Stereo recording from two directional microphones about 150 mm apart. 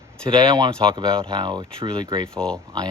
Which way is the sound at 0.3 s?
30° right (ahead or behind).